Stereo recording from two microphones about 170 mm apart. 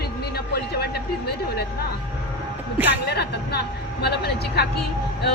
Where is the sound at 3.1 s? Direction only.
75° left (ahead or behind).